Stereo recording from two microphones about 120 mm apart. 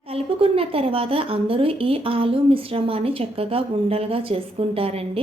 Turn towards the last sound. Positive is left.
turn(degrees=-55)  # may be behind; listen again after turning